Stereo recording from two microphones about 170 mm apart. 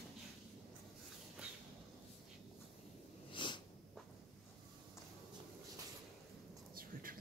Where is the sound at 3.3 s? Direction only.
25° left (ahead or behind).